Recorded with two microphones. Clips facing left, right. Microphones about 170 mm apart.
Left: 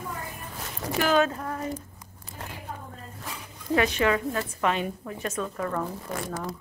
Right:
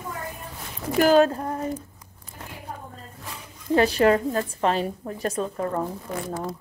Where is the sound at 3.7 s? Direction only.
35° right (ahead or behind).